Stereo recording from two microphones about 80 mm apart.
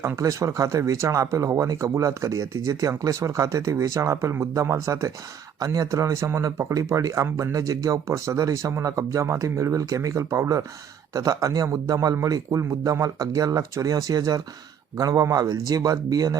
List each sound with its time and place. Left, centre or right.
0.2 s speech: right